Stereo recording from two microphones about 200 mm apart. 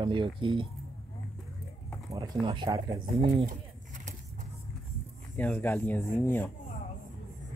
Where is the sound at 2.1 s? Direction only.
20° right (ahead or behind).